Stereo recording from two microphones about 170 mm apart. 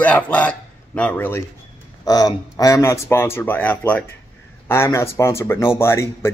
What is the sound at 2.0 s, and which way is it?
A man's voice, 20° left (ahead or behind).